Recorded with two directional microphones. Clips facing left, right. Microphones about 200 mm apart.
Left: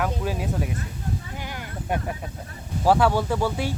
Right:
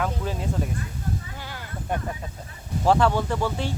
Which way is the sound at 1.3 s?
15° left (ahead or behind).